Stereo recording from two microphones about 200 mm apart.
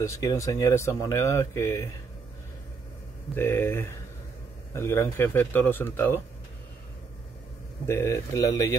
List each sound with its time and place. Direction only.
0.0 s speech: 15° left (ahead or behind)
3.3 s speech: 10° left (ahead or behind)
7.8 s speech: 15° left (ahead or behind)